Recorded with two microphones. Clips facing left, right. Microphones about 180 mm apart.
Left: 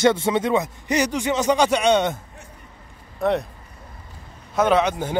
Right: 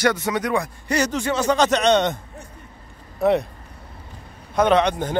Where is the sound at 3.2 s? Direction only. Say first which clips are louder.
Right 3 dB; 5° right (ahead or behind).